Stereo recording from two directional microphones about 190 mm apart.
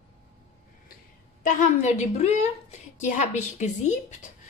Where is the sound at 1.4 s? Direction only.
40° left (ahead or behind).